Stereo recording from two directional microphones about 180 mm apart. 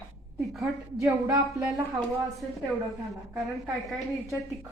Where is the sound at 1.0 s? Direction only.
15° right (ahead or behind).